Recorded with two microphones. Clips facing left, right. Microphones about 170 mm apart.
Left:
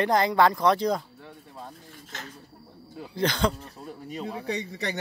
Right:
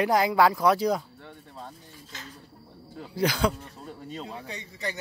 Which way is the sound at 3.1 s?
10° right (ahead or behind).